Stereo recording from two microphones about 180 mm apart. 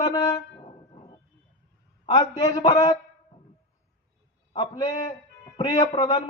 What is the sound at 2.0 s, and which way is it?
Speech, 35° left (ahead or behind).